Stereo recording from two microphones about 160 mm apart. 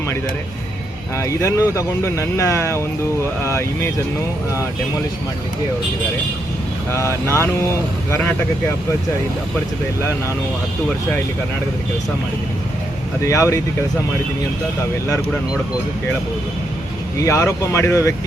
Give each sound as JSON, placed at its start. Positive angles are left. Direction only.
{"t": 1.2, "sound": "speech", "side_deg": 20}
{"t": 6.9, "sound": "speech", "side_deg": 15}
{"t": 13.2, "sound": "speech", "side_deg": 20}
{"t": 17.2, "sound": "speech", "side_deg": 20}